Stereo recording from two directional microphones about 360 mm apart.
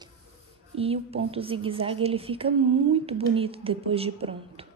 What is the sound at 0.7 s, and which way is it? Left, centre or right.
A woman's voice, centre.